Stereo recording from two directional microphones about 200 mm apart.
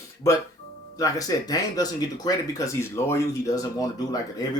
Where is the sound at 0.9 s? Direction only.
20° left (ahead or behind).